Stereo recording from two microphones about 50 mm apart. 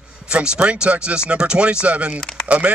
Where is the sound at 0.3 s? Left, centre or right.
Right.